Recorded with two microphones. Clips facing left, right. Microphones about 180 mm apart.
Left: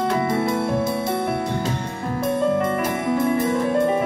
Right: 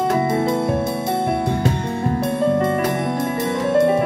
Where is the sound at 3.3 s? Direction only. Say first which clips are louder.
Right 2 dB; 75° right (ahead or behind).